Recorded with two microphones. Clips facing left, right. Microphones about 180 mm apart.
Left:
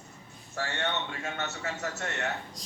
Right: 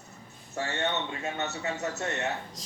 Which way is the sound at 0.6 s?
20° right (ahead or behind).